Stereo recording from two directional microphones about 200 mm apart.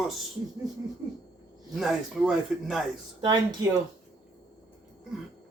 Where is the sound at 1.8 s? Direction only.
Centre (ahead or behind).